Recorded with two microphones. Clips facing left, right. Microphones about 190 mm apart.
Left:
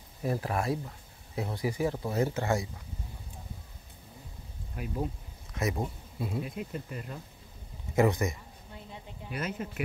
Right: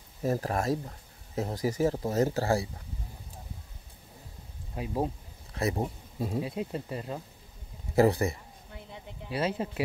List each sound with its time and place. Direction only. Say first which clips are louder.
0.2 s speech: right 2 dB; 40° right (ahead or behind)
5.0 s a sound: right 3 dB; 35° right (ahead or behind)
6.1 s speech: right 4 dB; 40° right (ahead or behind)